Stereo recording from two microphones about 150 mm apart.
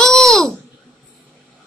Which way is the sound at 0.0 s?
5° left (ahead or behind).